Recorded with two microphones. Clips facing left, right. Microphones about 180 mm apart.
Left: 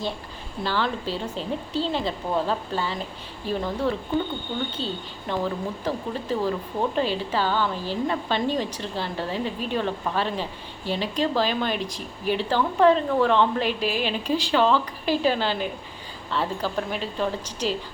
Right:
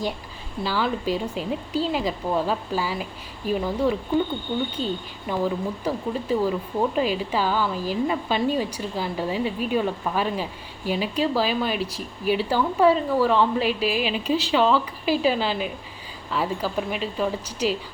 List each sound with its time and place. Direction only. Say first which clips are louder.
0.6 s speech: right 2 dB; 5° right (ahead or behind)